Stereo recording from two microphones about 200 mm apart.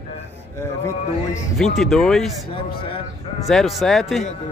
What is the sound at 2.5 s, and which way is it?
Speech, 25° left (ahead or behind).